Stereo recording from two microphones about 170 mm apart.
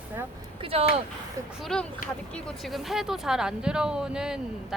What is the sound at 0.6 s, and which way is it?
Speech, 35° right (ahead or behind).